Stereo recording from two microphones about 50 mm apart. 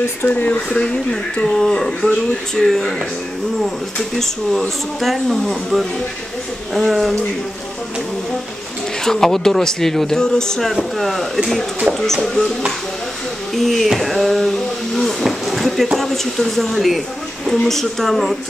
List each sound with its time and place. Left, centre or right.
0.5 s speech: centre
4.2 s speech: centre
9.0 s speech: centre
10.7 s speech: centre
13.6 s a sound: centre
17.5 s speech: centre